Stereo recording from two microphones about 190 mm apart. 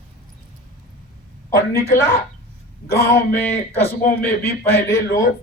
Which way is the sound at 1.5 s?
15° left (ahead or behind).